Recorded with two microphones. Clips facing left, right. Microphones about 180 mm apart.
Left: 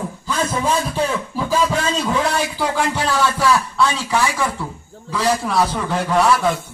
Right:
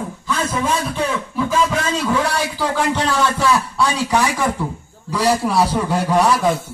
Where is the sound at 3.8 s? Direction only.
15° right (ahead or behind).